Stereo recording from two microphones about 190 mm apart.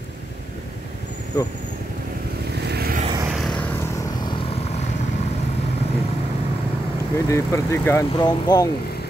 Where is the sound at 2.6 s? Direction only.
55° right (ahead or behind).